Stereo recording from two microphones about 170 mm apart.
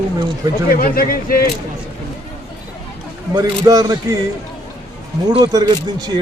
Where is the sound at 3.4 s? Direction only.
20° right (ahead or behind).